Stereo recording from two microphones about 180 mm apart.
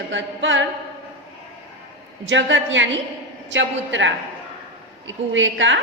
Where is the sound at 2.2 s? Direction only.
90° right.